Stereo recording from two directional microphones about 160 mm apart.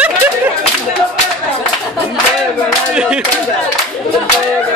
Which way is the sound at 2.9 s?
5° right (ahead or behind).